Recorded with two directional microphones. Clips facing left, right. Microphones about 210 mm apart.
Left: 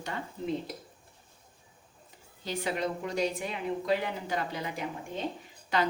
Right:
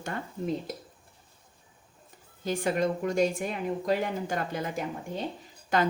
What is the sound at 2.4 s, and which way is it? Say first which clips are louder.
Speech: right 5 dB; 50° right (ahead or behind).